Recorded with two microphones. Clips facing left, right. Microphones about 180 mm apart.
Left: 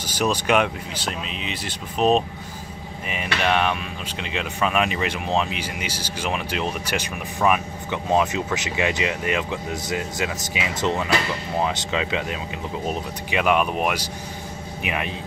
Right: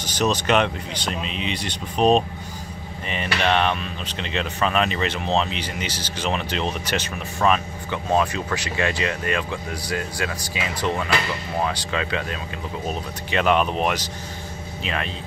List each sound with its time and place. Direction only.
0.0 s speech: 10° left (ahead or behind)
3.4 s speech: 5° left (ahead or behind)